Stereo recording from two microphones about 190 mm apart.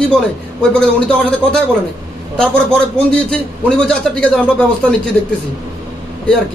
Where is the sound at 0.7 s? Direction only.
5° left (ahead or behind).